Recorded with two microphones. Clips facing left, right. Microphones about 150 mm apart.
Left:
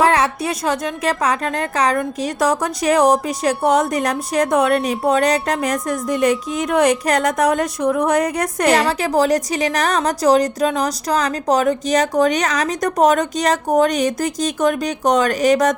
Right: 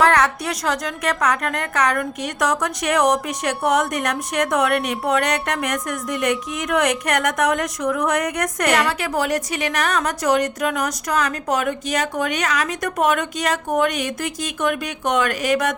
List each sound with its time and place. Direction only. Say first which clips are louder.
0.0 s a woman's voice: left 1 dB; 25° left (ahead or behind)